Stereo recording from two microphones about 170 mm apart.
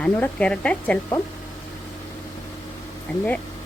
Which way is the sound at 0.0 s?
5° left (ahead or behind).